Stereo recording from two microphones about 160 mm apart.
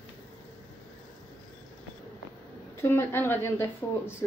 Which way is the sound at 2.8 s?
15° left (ahead or behind).